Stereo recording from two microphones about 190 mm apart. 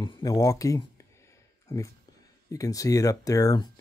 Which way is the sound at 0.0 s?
20° left (ahead or behind).